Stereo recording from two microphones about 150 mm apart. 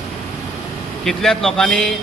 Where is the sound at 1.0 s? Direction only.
5° left (ahead or behind).